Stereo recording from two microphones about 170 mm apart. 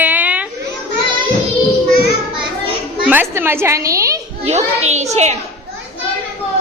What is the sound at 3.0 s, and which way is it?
A woman's voice, 10° right (ahead or behind).